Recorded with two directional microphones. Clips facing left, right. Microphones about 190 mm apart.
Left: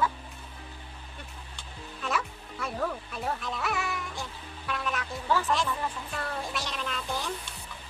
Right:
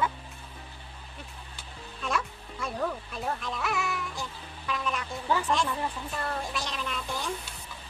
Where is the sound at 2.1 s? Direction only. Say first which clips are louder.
Even; centre (ahead or behind).